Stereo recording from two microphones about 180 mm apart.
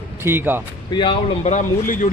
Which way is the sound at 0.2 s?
15° right (ahead or behind).